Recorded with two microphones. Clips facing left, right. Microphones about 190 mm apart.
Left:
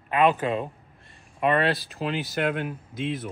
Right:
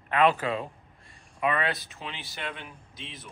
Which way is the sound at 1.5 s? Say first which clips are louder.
Left 6 dB; 30° left (ahead or behind).